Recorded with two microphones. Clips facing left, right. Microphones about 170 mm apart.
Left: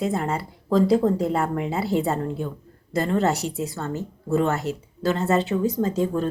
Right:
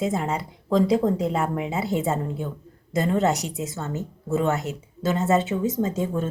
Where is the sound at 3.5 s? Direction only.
20° right (ahead or behind).